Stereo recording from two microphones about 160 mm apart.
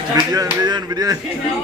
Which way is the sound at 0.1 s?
25° right (ahead or behind).